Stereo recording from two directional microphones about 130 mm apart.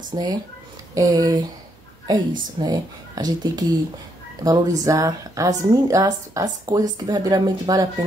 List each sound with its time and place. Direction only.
0.1 s speech: 35° right (ahead or behind)